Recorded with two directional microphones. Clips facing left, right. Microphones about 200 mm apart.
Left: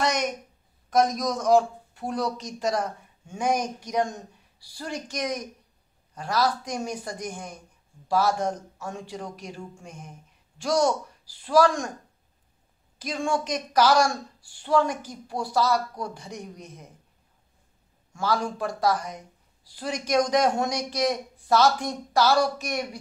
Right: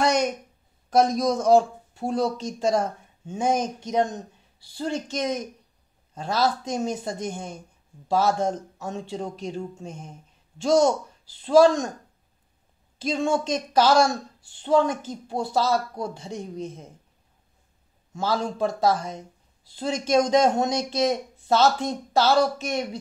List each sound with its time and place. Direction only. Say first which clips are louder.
0.0 s a sound: right 4 dB; 30° right (ahead or behind)
0.8 s a woman's voice: right 3 dB; 30° right (ahead or behind)
13.0 s a woman's voice: right 4 dB; 25° right (ahead or behind)
18.1 s a woman's voice: right 1 dB; 25° right (ahead or behind)